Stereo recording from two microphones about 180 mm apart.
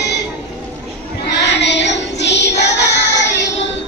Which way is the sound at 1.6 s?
75° left (ahead or behind).